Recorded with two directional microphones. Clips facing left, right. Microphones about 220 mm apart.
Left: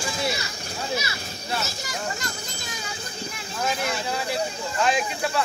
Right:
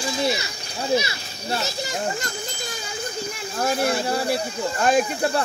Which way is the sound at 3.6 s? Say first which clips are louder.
Right 5 dB; 35° right (ahead or behind).